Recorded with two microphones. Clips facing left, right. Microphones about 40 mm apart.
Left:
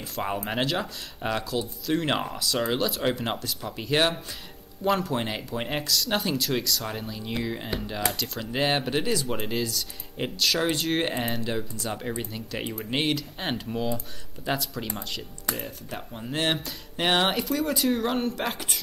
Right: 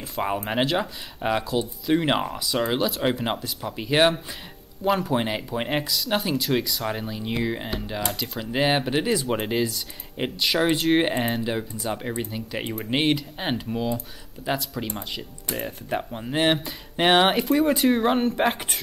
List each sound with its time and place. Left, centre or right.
0.0 s speech: centre
15.6 s speech: right